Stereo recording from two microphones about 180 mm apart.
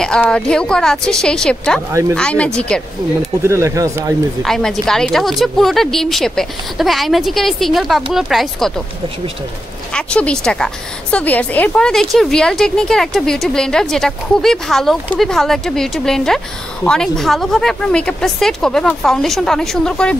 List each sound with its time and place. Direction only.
0.0 s a woman's voice: 5° left (ahead or behind)
1.9 s speech: 15° right (ahead or behind)
2.1 s a woman's voice: 5° left (ahead or behind)
3.2 s speech: 15° right (ahead or behind)
4.4 s a woman's voice: centre (ahead or behind)
9.9 s a woman's voice: 5° left (ahead or behind)